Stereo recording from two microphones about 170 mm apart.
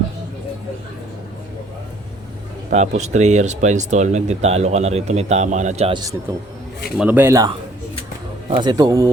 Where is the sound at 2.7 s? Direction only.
40° right (ahead or behind).